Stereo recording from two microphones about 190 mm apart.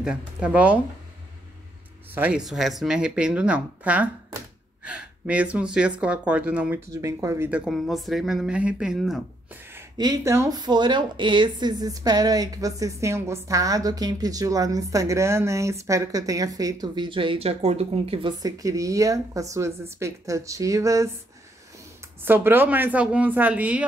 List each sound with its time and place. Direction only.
0.0 s speech: 5° right (ahead or behind)
2.0 s speech: 10° right (ahead or behind); by 18.3 s 30° right (ahead or behind)
18.4 s speech: 20° right (ahead or behind)
22.2 s speech: 10° right (ahead or behind)